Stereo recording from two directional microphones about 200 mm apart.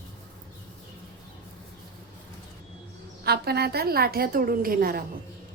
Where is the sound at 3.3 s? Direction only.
50° right (ahead or behind).